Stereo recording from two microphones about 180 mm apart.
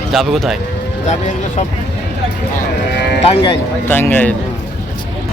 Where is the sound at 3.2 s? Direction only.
35° left (ahead or behind).